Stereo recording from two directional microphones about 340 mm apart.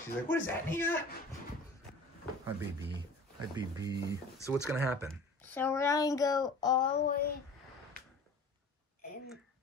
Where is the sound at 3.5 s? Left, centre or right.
Centre.